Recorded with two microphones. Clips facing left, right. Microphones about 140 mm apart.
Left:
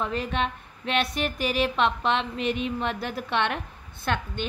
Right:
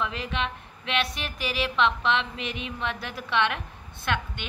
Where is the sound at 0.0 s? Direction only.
45° left (ahead or behind).